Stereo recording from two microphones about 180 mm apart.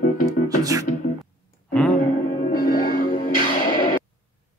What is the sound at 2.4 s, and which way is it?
Music, 50° left (ahead or behind).